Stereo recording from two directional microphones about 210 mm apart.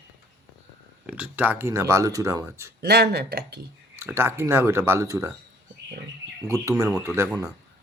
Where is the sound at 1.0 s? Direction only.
10° right (ahead or behind).